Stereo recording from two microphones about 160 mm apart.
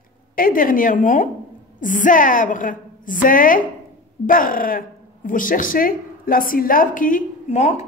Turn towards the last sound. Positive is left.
turn(degrees=45)  # may be behind; listen again after turning